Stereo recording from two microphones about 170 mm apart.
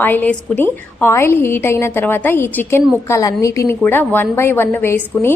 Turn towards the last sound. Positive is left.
turn(degrees=15)  # may be behind; listen again after turning